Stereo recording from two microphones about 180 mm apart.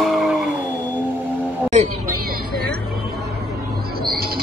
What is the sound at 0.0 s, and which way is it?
Vehicle, centre (ahead or behind).